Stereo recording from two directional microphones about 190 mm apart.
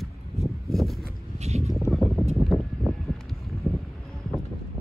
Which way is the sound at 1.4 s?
35° right (ahead or behind).